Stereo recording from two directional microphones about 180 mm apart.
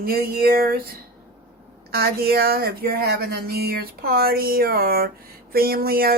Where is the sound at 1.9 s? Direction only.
60° right (ahead or behind).